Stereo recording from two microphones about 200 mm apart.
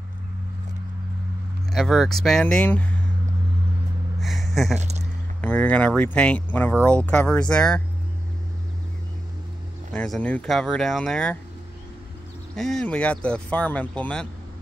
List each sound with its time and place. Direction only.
1.7 s speech: centre (ahead or behind)
4.2 s gasp: centre (ahead or behind)
4.7 s speech: 35° right (ahead or behind)
5.4 s speech: 10° left (ahead or behind)
9.9 s speech: 5° left (ahead or behind)
12.5 s speech: centre (ahead or behind)